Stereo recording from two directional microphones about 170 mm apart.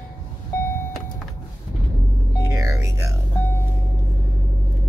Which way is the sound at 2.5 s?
20° right (ahead or behind).